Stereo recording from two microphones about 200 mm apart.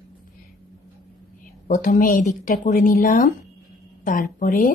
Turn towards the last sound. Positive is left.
turn(degrees=40)  # may be behind; listen again after turning